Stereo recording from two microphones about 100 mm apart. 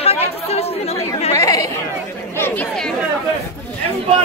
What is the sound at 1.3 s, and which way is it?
Chatter, 35° left (ahead or behind).